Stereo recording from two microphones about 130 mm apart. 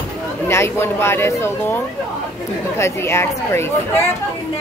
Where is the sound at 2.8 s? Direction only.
20° left (ahead or behind).